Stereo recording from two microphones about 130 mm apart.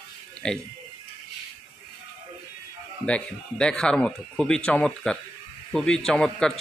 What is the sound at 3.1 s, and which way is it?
A man's voice, 10° left (ahead or behind).